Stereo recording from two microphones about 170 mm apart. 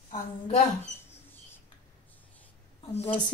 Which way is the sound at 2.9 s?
40° left (ahead or behind).